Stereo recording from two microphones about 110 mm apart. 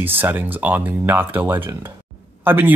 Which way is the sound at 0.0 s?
20° right (ahead or behind).